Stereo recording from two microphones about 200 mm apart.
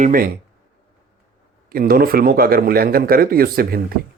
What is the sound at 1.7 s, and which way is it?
Speech, 50° right (ahead or behind).